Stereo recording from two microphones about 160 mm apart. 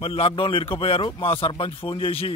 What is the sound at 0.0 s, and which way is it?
A man's voice, 35° left (ahead or behind).